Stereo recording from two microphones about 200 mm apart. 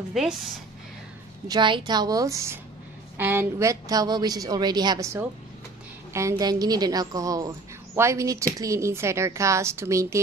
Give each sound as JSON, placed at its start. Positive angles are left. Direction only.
{"t": 0.2, "sound": "a woman's voice", "side_deg": 0}
{"t": 1.5, "sound": "a woman's voice", "side_deg": -20}